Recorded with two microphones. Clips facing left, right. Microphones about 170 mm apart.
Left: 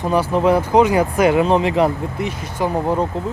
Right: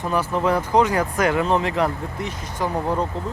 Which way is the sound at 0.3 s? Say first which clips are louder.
Left 5 dB; 15° left (ahead or behind).